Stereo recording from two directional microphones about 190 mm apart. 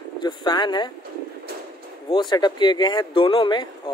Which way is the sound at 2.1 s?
25° left (ahead or behind).